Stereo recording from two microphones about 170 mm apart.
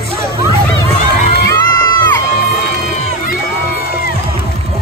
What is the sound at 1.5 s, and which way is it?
Crowd, 20° left (ahead or behind).